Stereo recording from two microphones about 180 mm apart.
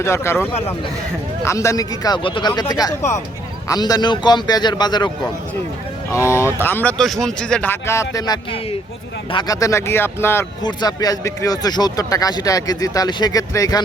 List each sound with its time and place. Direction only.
0.0 s speech: 15° left (ahead or behind)
1.5 s speech: 15° left (ahead or behind)